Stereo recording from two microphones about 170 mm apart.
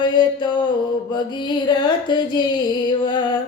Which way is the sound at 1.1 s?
25° left (ahead or behind).